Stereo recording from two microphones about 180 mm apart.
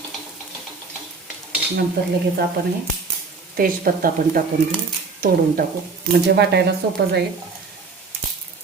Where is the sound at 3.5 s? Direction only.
55° right (ahead or behind).